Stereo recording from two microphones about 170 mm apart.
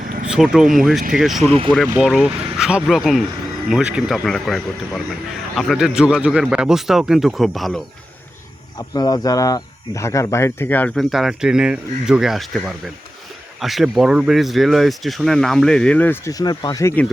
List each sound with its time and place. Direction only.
0.3 s speech: 5° right (ahead or behind)
1.5 s speech: 35° right (ahead or behind)
2.0 s speech: 5° right (ahead or behind)
8.9 s speech: 20° left (ahead or behind)